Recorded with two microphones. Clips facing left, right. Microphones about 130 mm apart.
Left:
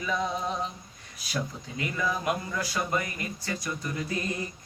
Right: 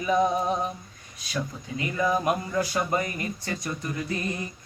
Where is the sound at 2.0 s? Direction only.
25° right (ahead or behind).